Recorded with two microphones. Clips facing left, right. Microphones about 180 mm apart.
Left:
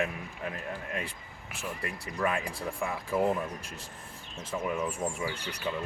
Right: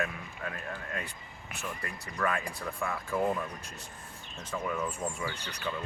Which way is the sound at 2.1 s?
10° left (ahead or behind).